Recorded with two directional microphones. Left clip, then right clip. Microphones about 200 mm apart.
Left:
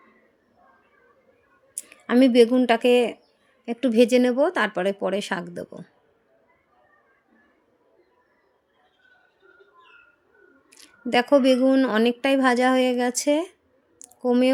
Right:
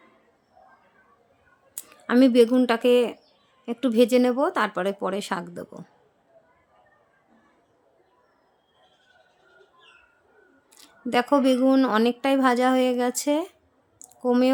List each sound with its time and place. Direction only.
1.7 s speech: 5° left (ahead or behind)
10.7 s speech: 5° left (ahead or behind)